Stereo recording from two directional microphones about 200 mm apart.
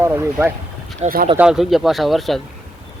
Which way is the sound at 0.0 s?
10° right (ahead or behind).